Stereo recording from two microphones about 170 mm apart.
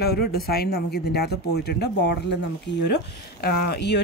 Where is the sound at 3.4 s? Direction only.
70° left (ahead or behind).